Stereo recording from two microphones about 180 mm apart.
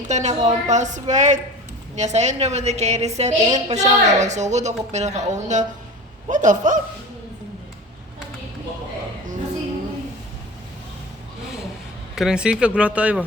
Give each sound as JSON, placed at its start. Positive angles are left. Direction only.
{"t": 0.1, "sound": "a woman's voice", "side_deg": -40}
{"t": 12.1, "sound": "speech", "side_deg": -5}